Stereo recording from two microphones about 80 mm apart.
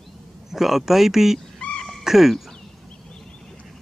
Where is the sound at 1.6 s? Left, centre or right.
Centre.